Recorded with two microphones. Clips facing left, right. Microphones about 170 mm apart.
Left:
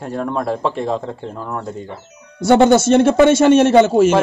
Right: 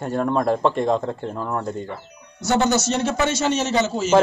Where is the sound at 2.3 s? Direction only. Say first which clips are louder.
Left 9 dB; 55° left (ahead or behind).